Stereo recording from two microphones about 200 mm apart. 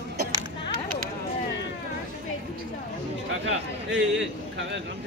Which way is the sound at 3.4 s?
65° right (ahead or behind).